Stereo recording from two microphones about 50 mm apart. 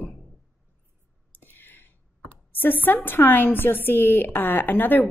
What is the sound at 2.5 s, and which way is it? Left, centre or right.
A woman's voice, left.